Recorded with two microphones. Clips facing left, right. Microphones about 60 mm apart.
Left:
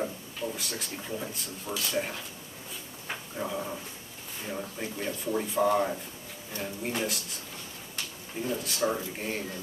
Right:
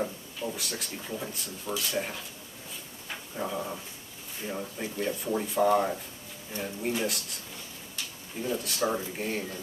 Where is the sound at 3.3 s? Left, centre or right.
Centre.